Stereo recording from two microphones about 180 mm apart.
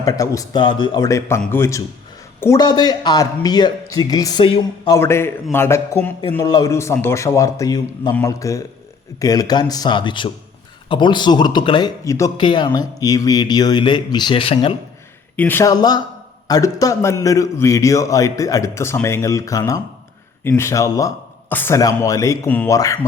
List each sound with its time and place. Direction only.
0.0 s a man's voice: 20° left (ahead or behind)
15.4 s a man's voice: 10° left (ahead or behind)